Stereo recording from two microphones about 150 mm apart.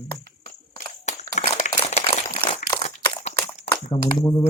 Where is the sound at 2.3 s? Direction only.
40° left (ahead or behind).